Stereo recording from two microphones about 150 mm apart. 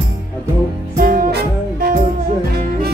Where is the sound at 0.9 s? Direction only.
75° right (ahead or behind).